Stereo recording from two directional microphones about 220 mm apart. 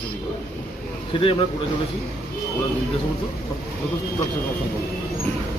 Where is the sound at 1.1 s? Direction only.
25° left (ahead or behind).